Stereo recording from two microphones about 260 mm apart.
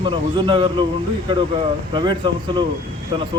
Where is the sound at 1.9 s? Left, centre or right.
Centre.